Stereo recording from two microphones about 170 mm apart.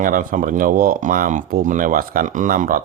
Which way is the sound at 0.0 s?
55° right (ahead or behind).